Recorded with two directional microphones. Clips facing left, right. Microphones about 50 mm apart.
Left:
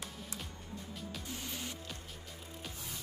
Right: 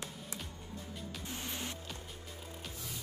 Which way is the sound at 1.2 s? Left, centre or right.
Right.